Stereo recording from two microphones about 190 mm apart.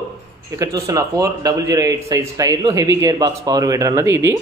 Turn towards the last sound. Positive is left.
turn(degrees=-15)  # may be behind; listen again after turning